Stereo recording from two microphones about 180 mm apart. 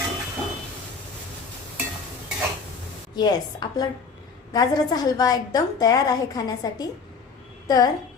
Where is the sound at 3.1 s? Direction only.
25° left (ahead or behind).